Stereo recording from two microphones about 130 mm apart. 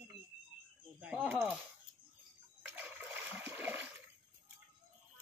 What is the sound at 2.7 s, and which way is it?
Splash, 15° right (ahead or behind).